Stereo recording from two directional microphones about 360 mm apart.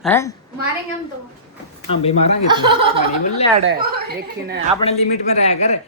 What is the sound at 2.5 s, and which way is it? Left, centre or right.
Speech, centre.